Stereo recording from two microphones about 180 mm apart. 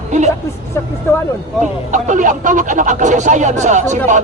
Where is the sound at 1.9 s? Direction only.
45° right (ahead or behind).